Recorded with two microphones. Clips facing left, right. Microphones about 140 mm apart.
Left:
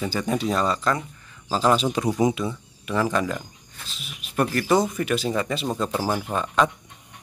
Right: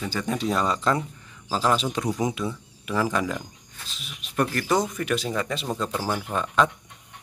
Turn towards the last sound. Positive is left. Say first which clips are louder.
# left 1 dB
turn(degrees=5)  # may be behind; listen again after turning